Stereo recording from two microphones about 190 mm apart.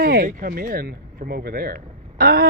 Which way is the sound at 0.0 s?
55° right (ahead or behind).